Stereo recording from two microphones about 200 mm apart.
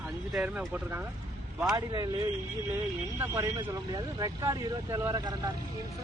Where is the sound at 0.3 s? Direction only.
5° right (ahead or behind).